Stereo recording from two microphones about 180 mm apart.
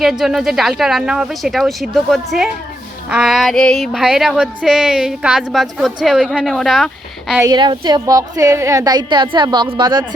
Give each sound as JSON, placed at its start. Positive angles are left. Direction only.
{"t": 0.0, "sound": "speech", "side_deg": 0}
{"t": 7.4, "sound": "a woman's voice", "side_deg": -25}